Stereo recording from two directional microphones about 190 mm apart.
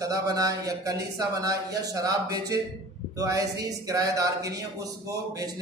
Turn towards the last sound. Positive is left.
turn(degrees=-20)  # may be behind; listen again after turning